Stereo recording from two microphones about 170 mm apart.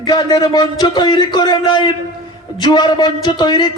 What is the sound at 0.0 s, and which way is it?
Music, 25° left (ahead or behind).